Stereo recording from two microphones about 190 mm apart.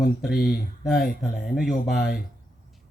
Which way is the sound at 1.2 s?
Centre (ahead or behind).